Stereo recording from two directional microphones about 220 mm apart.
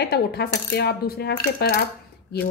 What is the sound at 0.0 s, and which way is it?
Speech, 45° left (ahead or behind).